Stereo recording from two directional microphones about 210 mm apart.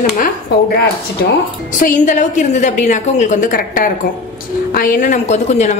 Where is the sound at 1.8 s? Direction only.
35° left (ahead or behind).